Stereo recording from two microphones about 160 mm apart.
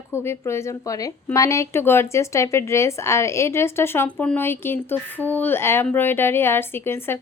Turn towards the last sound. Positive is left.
turn(degrees=15)  # may be behind; listen again after turning